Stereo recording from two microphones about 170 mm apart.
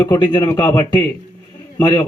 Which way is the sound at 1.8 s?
20° left (ahead or behind).